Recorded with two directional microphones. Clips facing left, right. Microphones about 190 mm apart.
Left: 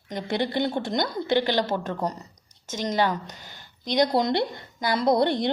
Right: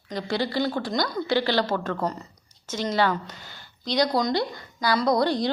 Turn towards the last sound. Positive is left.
turn(degrees=25)  # may be behind; listen again after turning